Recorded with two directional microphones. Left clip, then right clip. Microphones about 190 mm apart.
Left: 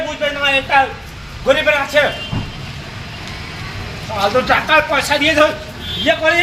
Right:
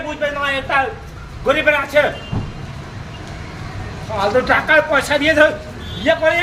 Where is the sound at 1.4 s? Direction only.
15° right (ahead or behind).